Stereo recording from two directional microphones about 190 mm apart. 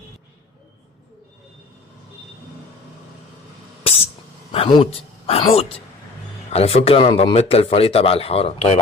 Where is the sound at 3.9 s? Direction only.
30° left (ahead or behind).